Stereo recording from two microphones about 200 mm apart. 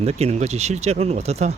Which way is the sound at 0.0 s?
30° right (ahead or behind).